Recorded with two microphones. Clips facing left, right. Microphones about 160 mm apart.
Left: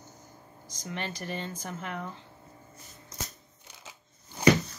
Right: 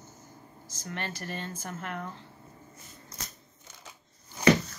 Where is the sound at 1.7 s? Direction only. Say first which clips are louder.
Right 1 dB; 5° left (ahead or behind).